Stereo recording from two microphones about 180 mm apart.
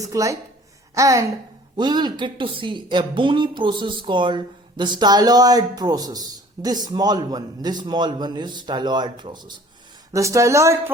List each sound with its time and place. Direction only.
0.0 s a man's voice: 15° right (ahead or behind)